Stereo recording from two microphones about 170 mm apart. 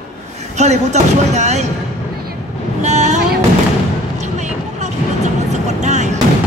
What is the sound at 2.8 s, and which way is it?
Speech, 40° right (ahead or behind).